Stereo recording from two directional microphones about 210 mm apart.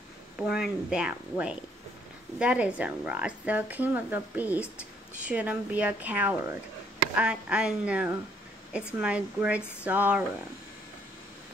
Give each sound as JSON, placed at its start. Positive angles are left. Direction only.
{"t": 0.4, "sound": "speech", "side_deg": 0}